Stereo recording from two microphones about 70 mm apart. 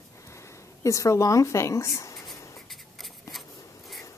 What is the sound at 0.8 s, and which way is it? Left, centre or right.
Speech, left.